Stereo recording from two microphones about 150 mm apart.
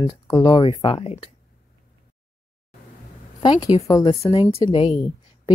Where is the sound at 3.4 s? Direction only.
25° left (ahead or behind).